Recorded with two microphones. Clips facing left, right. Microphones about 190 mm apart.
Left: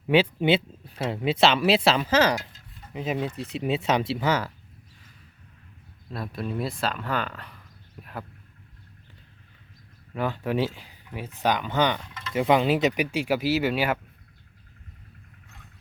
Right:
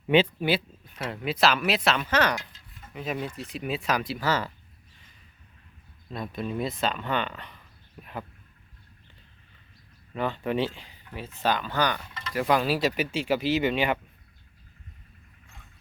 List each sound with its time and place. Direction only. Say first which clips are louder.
0.3 s speech: left 4 dB; 25° left (ahead or behind)
4.3 s speech: left 1 dB; 10° left (ahead or behind)
6.1 s speech: even; centre (ahead or behind)
10.2 s speech: left 1 dB; 5° left (ahead or behind)